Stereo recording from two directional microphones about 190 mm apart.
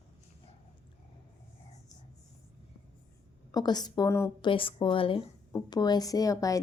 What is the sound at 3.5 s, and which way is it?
A woman's voice, 20° left (ahead or behind).